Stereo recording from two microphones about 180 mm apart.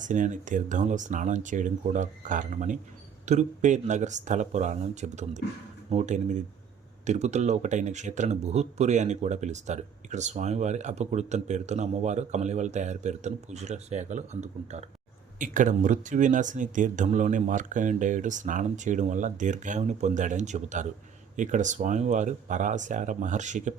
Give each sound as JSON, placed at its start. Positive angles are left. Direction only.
{"t": 0.0, "sound": "speech", "side_deg": -45}